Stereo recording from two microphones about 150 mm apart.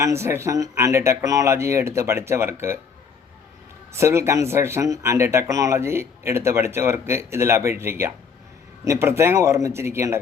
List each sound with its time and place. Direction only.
0.0 s speech: 20° right (ahead or behind)
3.9 s speech: 20° right (ahead or behind)